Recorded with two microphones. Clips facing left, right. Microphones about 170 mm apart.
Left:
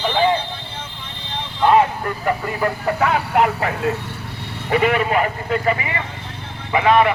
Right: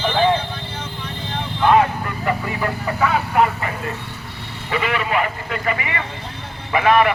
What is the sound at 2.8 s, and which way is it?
Speech, 60° left (ahead or behind).